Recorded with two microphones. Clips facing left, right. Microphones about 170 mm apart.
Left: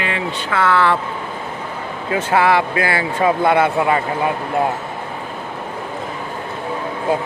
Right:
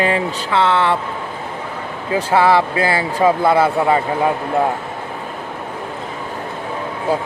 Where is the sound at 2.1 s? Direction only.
30° right (ahead or behind).